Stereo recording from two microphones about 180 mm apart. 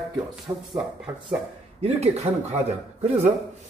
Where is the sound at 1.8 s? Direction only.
35° right (ahead or behind).